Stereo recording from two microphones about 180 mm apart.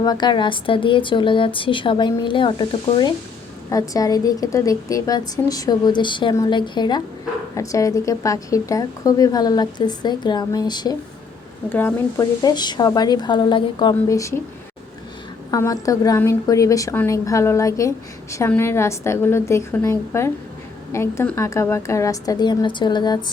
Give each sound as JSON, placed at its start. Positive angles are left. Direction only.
{"t": 0.0, "sound": "speech", "side_deg": 25}
{"t": 11.7, "sound": "speech", "side_deg": 10}
{"t": 15.4, "sound": "a woman's voice", "side_deg": 20}